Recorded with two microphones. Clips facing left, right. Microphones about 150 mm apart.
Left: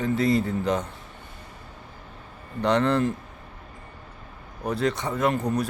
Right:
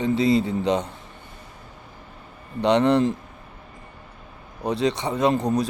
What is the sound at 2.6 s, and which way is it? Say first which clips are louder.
Speech: right 4 dB; 15° right (ahead or behind).